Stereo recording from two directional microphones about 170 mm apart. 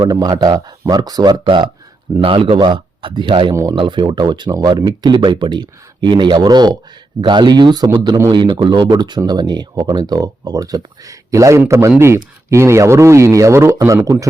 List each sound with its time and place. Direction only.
0.0 s a man's voice: 20° right (ahead or behind)
3.5 s speech: 20° right (ahead or behind)
3.8 s speech: 30° right (ahead or behind)